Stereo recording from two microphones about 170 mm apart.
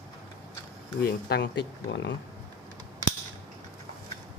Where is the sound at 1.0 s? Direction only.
85° left.